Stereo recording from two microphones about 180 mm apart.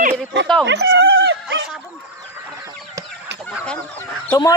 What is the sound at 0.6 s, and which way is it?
Dog, 80° right.